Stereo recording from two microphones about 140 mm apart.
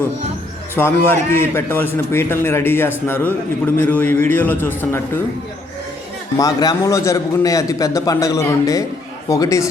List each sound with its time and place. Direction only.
0.8 s a man's voice: 15° left (ahead or behind)
6.3 s a man's voice: 25° left (ahead or behind)